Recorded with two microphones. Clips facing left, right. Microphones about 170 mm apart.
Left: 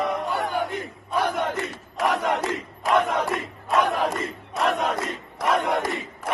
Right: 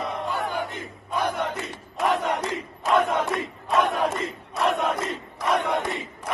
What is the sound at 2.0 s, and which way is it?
Crowd, 75° left (ahead or behind).